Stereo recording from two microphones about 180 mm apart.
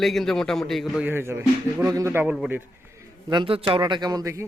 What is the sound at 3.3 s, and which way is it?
A man's voice, 30° right (ahead or behind).